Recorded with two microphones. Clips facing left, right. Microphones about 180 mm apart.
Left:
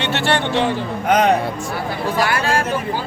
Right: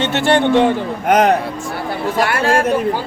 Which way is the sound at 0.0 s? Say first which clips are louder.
Right 5 dB; 45° right (ahead or behind).